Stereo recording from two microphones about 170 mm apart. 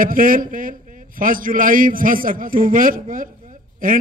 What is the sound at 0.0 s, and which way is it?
A man's voice, 55° right (ahead or behind).